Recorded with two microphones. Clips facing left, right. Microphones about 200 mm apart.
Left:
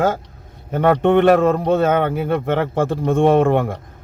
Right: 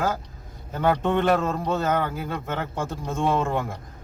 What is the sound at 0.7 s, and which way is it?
A man's voice, 70° left (ahead or behind).